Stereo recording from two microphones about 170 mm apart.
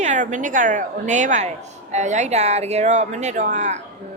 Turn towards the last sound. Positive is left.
turn(degrees=-45)  # may be behind; listen again after turning